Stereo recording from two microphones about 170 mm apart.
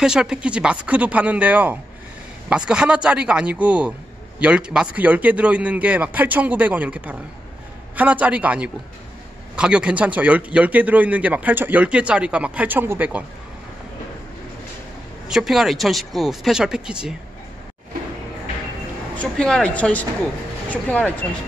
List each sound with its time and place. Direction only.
0.0 s a man's voice: 5° right (ahead or behind)
15.2 s speech: centre (ahead or behind)
19.1 s speech: 5° left (ahead or behind)